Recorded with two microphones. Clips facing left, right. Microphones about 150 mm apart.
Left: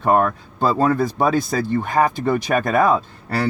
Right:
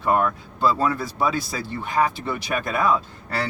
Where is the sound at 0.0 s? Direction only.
45° left (ahead or behind).